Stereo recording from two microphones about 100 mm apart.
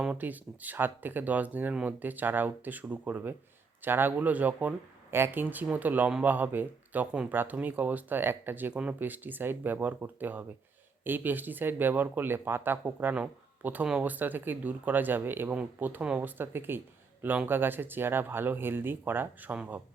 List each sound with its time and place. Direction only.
0.0 s speech: 15° right (ahead or behind)